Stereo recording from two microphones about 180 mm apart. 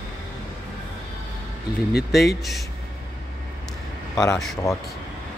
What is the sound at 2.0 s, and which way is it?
Speech, centre (ahead or behind).